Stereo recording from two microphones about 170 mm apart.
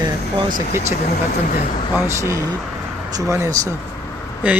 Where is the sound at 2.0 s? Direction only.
15° right (ahead or behind).